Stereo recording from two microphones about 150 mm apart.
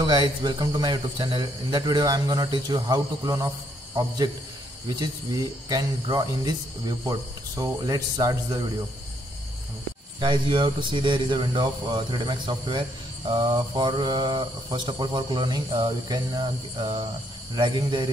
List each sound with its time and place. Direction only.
0.0 s speech: 30° right (ahead or behind)
4.8 s speech: 25° right (ahead or behind)
10.2 s speech: 35° right (ahead or behind)